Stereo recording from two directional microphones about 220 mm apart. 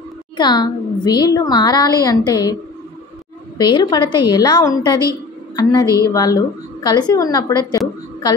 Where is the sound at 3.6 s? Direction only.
20° left (ahead or behind).